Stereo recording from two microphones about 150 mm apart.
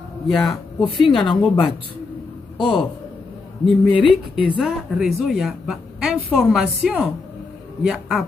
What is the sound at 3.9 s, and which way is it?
Speech, 35° left (ahead or behind).